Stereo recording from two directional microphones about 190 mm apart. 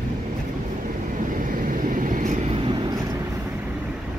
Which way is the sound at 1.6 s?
45° right (ahead or behind).